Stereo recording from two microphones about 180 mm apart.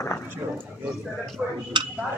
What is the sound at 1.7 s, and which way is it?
Speech, 25° right (ahead or behind).